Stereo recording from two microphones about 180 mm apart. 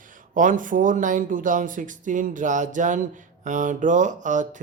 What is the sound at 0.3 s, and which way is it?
Speech, 45° right (ahead or behind).